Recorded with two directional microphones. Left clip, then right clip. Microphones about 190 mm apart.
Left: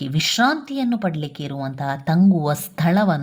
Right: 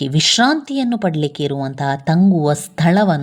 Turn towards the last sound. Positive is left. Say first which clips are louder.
# right 4 dB
turn(degrees=-20)  # may be behind; listen again after turning